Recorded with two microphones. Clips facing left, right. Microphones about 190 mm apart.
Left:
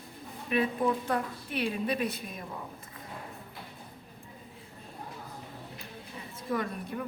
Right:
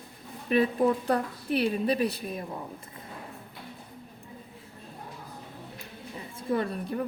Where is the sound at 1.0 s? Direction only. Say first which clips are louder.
Right 5 dB; 35° right (ahead or behind).